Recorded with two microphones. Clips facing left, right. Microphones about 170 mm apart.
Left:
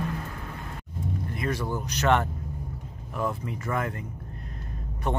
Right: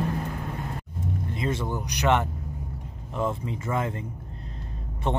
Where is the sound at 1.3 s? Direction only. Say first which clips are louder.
Right 1 dB; 20° right (ahead or behind).